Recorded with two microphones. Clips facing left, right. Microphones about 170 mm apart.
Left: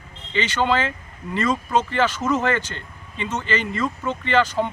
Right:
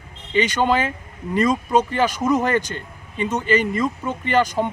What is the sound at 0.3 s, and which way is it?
Speech, 15° right (ahead or behind).